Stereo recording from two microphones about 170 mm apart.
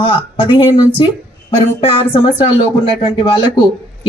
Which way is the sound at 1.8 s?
30° left (ahead or behind).